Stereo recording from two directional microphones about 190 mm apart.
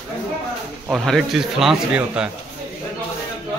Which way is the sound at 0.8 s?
Centre (ahead or behind).